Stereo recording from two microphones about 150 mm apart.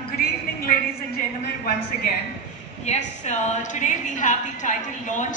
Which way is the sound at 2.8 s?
50° left (ahead or behind).